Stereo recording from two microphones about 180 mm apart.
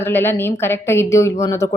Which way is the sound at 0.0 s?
10° left (ahead or behind).